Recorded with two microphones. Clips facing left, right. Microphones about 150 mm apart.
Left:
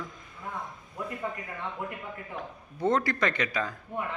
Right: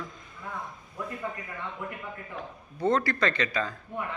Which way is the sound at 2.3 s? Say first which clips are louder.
Even; 15° left (ahead or behind).